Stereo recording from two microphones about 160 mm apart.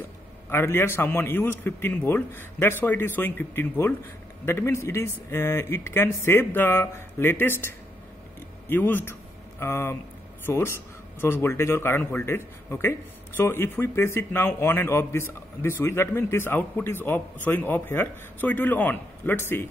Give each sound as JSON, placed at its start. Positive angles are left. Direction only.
{"t": 0.5, "sound": "a man's voice", "side_deg": 15}